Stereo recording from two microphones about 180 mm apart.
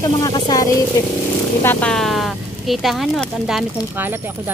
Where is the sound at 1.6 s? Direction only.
10° left (ahead or behind).